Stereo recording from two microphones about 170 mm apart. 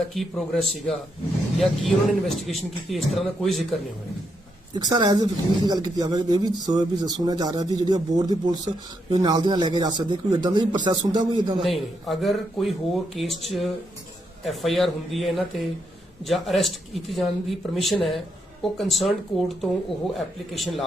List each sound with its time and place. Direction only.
0.1 s speech: centre (ahead or behind)
4.7 s speech: 25° right (ahead or behind)
11.6 s speech: centre (ahead or behind)